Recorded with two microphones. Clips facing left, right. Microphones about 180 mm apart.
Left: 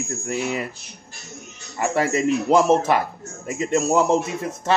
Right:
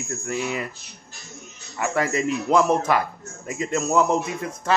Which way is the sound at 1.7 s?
30° left (ahead or behind).